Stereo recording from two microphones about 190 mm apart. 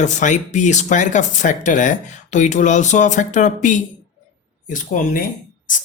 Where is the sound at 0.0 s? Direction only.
40° left (ahead or behind).